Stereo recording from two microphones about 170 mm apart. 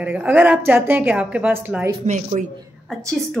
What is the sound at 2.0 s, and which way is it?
Speech, 45° right (ahead or behind).